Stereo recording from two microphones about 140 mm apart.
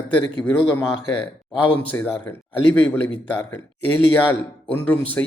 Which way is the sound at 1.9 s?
15° left (ahead or behind).